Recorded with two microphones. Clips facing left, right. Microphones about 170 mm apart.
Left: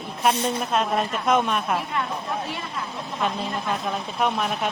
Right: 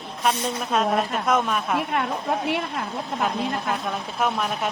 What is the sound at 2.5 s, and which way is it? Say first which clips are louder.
Speech: right 6 dB; 65° right (ahead or behind).